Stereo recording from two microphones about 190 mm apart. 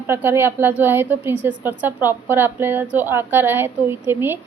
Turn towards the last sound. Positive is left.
turn(degrees=-10)  # may be behind; listen again after turning